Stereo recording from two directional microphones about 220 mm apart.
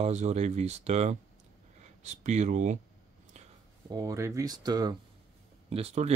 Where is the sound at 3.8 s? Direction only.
15° right (ahead or behind).